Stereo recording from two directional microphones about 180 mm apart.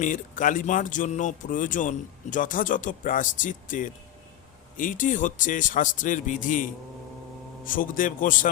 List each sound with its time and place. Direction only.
0.0 s speech: 45° left (ahead or behind)